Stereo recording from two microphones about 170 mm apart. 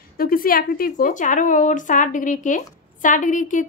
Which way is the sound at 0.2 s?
60° left (ahead or behind).